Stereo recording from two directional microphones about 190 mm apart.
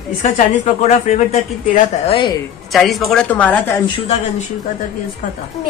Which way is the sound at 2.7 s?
Centre (ahead or behind).